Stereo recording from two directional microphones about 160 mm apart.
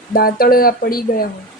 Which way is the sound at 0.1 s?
70° left (ahead or behind).